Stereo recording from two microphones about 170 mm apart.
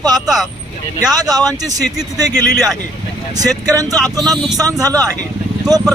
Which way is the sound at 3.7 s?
20° right (ahead or behind).